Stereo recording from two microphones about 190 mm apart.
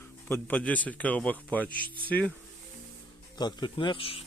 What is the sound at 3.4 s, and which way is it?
Speech, 25° left (ahead or behind).